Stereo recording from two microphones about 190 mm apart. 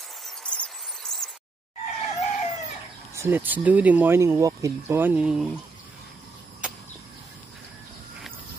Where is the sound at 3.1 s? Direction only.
15° right (ahead or behind).